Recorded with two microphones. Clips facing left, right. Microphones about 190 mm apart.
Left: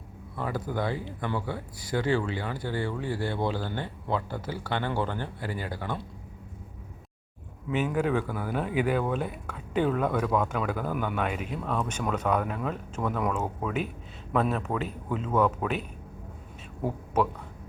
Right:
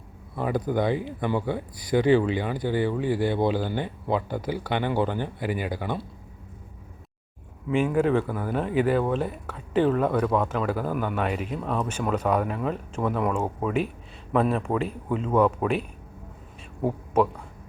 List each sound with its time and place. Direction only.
0.3 s speech: 15° right (ahead or behind)
7.7 s speech: 5° left (ahead or behind)